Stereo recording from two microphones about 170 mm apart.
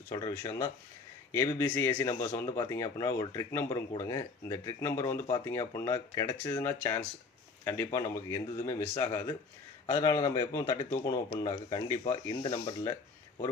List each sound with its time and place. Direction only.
0.1 s speech: 20° left (ahead or behind)